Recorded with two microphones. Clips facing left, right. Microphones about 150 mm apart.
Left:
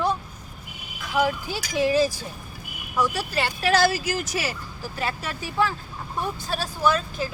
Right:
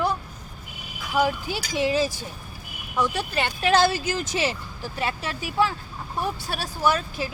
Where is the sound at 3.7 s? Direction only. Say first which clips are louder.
Right 1 dB; 25° right (ahead or behind).